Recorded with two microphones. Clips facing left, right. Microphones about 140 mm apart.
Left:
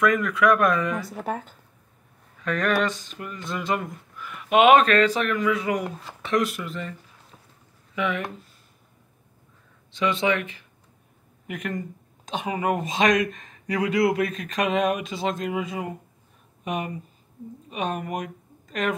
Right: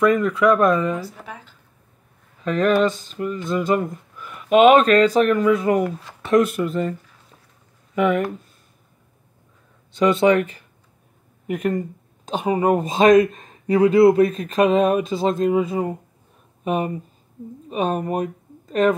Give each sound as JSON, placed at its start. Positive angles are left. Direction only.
{"t": 0.0, "sound": "speech", "side_deg": -30}
{"t": 1.2, "sound": "speech", "side_deg": 45}
{"t": 2.4, "sound": "speech", "side_deg": -30}
{"t": 3.6, "sound": "speech", "side_deg": -40}
{"t": 9.9, "sound": "speech", "side_deg": -40}